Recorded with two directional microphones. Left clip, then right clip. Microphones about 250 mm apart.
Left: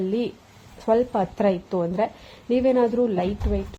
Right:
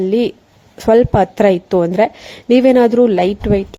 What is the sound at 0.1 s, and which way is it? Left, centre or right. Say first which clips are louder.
A woman's voice: right 11 dB; right.